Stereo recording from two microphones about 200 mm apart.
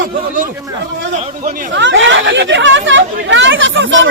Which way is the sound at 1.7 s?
65° right (ahead or behind).